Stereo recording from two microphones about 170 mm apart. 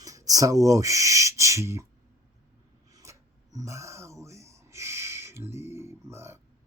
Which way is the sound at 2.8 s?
20° right (ahead or behind).